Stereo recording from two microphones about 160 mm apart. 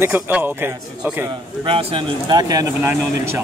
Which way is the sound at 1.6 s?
35° right (ahead or behind).